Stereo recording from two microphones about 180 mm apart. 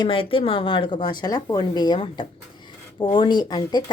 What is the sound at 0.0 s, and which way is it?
A woman's voice, 30° left (ahead or behind).